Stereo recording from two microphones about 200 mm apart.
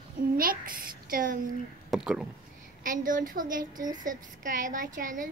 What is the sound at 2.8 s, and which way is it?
A child's voice, 40° right (ahead or behind).